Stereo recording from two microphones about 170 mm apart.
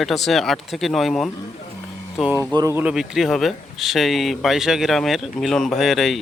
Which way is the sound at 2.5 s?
20° right (ahead or behind).